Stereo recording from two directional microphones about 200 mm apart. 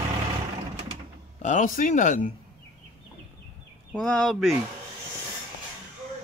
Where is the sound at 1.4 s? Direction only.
40° left (ahead or behind).